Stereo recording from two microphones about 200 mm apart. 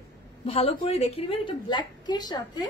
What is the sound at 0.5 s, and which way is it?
A woman's voice, 30° left (ahead or behind).